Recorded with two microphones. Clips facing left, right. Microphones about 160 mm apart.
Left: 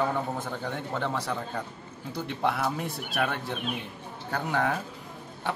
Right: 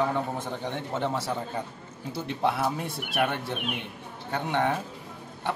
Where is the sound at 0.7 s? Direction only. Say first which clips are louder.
Right 2 dB; 20° right (ahead or behind).